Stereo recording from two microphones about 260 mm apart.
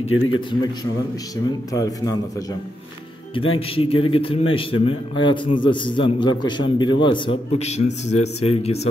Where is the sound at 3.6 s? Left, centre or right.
Left.